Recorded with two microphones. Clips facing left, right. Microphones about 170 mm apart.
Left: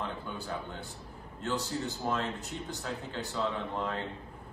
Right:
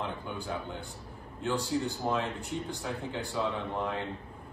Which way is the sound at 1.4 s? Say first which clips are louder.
Right 3 dB; 15° right (ahead or behind).